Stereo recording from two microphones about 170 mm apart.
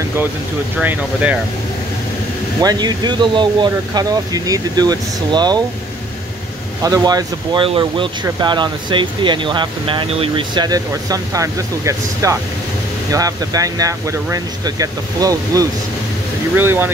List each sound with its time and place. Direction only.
0.7 s speech: 10° right (ahead or behind)
2.6 s speech: 25° right (ahead or behind)
6.8 s speech: 20° right (ahead or behind)